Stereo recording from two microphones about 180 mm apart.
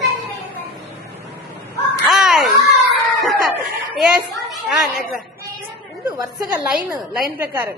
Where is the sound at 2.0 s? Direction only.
Centre (ahead or behind).